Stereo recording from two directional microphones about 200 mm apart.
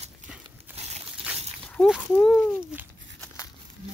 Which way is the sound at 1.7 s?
5° left (ahead or behind).